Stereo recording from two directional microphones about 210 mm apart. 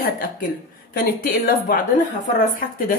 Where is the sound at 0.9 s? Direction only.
45° left (ahead or behind).